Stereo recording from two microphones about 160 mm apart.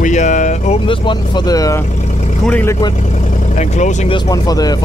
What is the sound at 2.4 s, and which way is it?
Speech, 10° left (ahead or behind).